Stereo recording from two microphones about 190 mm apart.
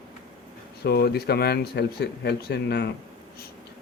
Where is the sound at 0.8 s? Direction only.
55° left (ahead or behind).